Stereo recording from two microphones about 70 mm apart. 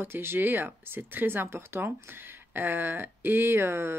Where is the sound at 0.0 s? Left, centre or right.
Right.